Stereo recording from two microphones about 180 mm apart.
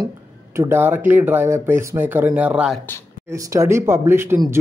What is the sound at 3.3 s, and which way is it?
Speech, 15° right (ahead or behind).